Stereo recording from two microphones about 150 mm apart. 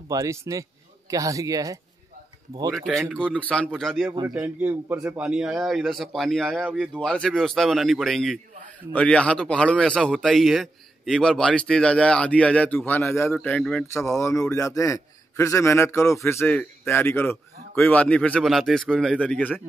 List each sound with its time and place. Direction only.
0.1 s speech: 20° right (ahead or behind)
3.1 s speech: 5° left (ahead or behind)
4.3 s a man's voice: 10° right (ahead or behind); by 13.8 s 5° left (ahead or behind)
13.9 s a man's voice: 20° left (ahead or behind)